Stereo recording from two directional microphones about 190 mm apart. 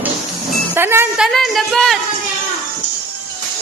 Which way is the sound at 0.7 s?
10° right (ahead or behind).